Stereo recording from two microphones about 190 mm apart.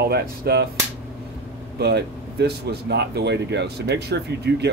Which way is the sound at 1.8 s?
60° right (ahead or behind).